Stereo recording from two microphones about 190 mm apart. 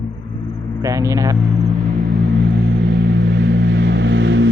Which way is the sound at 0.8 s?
15° right (ahead or behind).